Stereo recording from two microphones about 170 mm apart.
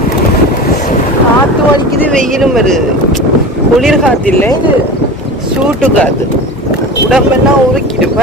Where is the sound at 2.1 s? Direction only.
Centre (ahead or behind).